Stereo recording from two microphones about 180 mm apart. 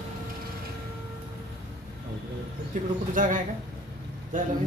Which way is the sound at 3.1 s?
50° right (ahead or behind).